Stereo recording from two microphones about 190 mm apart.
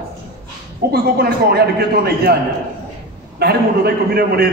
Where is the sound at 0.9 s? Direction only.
55° right (ahead or behind).